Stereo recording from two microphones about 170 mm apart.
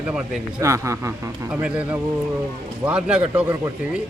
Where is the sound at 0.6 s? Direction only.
15° right (ahead or behind).